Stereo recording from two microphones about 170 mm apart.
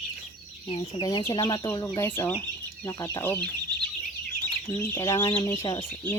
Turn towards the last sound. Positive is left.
turn(degrees=25)  # may be behind; listen again after turning